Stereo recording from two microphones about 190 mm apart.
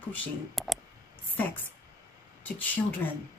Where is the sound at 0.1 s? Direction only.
Centre (ahead or behind).